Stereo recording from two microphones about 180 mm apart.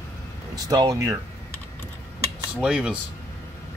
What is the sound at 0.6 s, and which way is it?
Speech, 20° right (ahead or behind).